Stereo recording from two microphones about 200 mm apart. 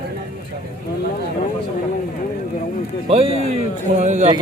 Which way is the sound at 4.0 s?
35° right (ahead or behind).